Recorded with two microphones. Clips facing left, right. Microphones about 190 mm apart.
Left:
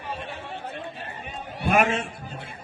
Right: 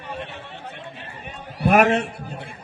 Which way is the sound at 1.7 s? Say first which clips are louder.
Right 5 dB; 65° right (ahead or behind).